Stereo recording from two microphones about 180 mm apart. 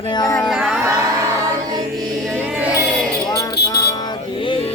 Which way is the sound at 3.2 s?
20° left (ahead or behind).